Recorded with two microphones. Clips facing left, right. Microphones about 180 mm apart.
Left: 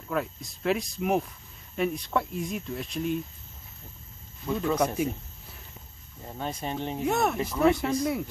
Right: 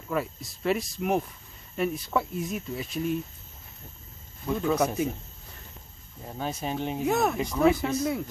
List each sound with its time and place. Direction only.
0.1 s speech: centre (ahead or behind)
4.5 s speech: centre (ahead or behind)